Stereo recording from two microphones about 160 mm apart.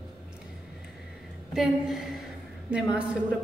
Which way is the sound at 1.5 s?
Centre (ahead or behind).